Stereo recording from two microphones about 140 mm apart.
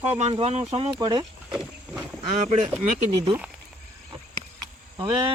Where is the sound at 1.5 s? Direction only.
5° right (ahead or behind).